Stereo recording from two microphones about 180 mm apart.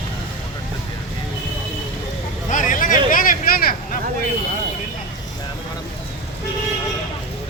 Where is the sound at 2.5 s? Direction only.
45° left (ahead or behind).